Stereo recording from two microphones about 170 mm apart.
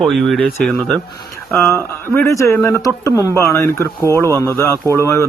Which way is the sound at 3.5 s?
15° left (ahead or behind).